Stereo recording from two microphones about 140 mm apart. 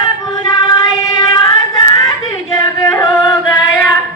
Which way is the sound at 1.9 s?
25° left (ahead or behind).